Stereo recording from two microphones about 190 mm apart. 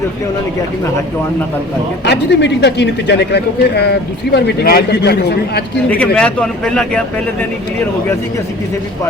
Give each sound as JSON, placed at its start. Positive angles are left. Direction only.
{"t": 2.0, "sound": "speech", "side_deg": 65}
{"t": 6.1, "sound": "speech", "side_deg": 5}